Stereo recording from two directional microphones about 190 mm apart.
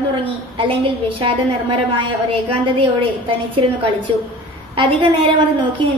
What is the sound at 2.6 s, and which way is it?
A woman's voice, 25° right (ahead or behind).